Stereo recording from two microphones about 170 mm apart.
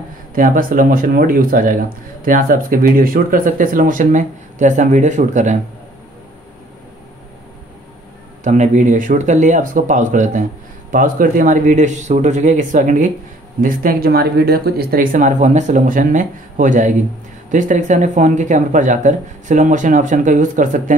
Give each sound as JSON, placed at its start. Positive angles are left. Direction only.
{"t": 0.3, "sound": "speech", "side_deg": -55}
{"t": 8.5, "sound": "speech", "side_deg": -45}